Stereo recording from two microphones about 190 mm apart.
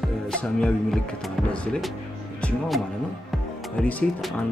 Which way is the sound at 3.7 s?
5° left (ahead or behind).